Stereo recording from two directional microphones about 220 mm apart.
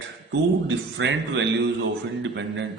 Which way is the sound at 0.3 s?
55° right (ahead or behind).